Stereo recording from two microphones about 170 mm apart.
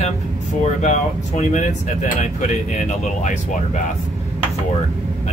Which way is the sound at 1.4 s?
45° left (ahead or behind).